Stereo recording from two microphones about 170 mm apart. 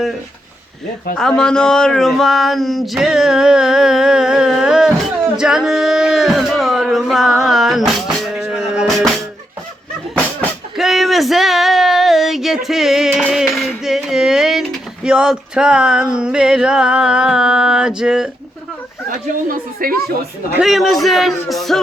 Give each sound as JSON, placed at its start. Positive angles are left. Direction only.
{"t": 1.1, "sound": "speech", "side_deg": 5}
{"t": 10.8, "sound": "a sound", "side_deg": 0}
{"t": 15.0, "sound": "speech", "side_deg": -5}
{"t": 19.0, "sound": "a woman's voice", "side_deg": -55}
{"t": 20.6, "sound": "speech", "side_deg": 0}